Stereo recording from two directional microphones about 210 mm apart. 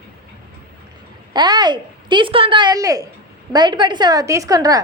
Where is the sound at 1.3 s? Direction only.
20° right (ahead or behind).